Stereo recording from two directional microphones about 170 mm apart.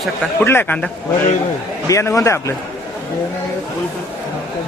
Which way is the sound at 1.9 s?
20° left (ahead or behind).